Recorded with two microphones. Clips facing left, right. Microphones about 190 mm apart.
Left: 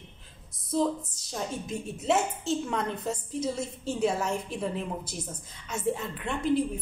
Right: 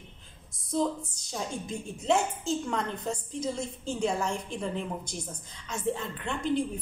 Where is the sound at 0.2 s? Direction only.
Centre (ahead or behind).